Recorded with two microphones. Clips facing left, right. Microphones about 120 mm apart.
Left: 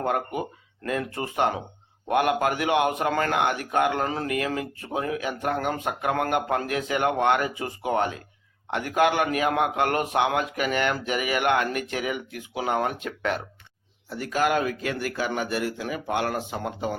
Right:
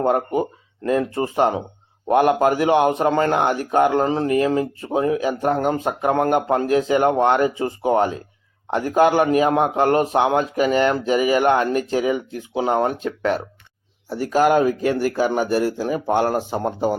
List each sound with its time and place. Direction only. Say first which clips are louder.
0.0 s a man's voice: right 7 dB; 30° right (ahead or behind)